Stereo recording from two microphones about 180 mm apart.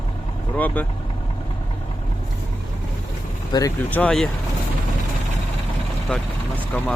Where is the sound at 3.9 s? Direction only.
5° left (ahead or behind).